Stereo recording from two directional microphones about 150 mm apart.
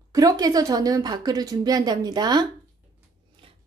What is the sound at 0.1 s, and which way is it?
A woman's voice, 25° right (ahead or behind).